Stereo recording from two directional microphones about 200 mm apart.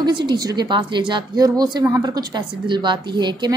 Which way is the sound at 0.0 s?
20° right (ahead or behind).